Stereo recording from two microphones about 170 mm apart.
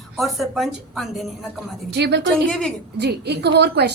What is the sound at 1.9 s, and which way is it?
Speech, 85° right.